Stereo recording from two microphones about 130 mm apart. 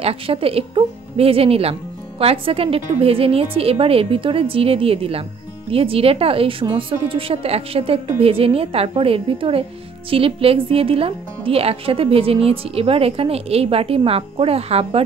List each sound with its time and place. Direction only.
0.0 s a woman's voice: 50° right (ahead or behind)